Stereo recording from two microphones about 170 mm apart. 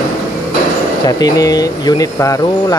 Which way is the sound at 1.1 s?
20° left (ahead or behind).